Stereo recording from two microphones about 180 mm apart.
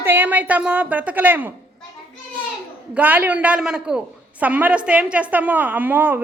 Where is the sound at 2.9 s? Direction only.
10° right (ahead or behind).